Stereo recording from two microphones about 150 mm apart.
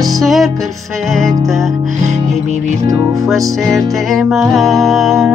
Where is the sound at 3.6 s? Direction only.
Centre (ahead or behind).